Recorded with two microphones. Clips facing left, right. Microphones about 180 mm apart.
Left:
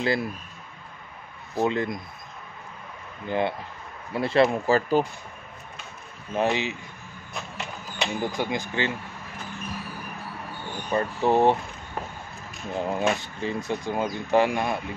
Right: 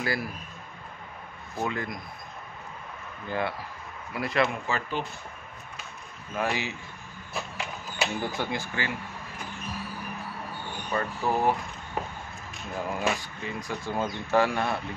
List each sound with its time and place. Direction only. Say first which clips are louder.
0.0 s speech: left 5 dB; 25° left (ahead or behind)
1.6 s speech: left 7 dB; 25° left (ahead or behind)
3.3 s speech: left 5 dB; 20° left (ahead or behind); by 5.0 s 40° left (ahead or behind)
6.3 s speech: left 5 dB; 20° left (ahead or behind)
7.3 s horse: right 1 dB; 5° right (ahead or behind)
8.4 s speech: left 4 dB; 15° left (ahead or behind)
10.9 s speech: left 6 dB; 25° left (ahead or behind)
12.7 s speech: left 4 dB; 25° left (ahead or behind)